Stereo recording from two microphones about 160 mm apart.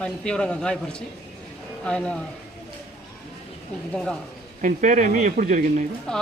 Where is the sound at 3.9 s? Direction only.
5° left (ahead or behind).